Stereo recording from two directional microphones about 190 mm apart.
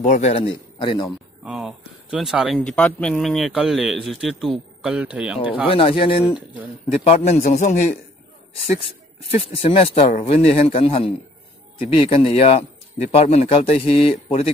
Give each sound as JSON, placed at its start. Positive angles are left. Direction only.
{"t": 0.0, "sound": "a man's voice", "side_deg": 40}
{"t": 1.4, "sound": "speech", "side_deg": -5}
{"t": 5.7, "sound": "a man's voice", "side_deg": 30}
{"t": 6.3, "sound": "speech", "side_deg": -10}
{"t": 7.1, "sound": "a man's voice", "side_deg": 35}
{"t": 9.3, "sound": "a man's voice", "side_deg": 30}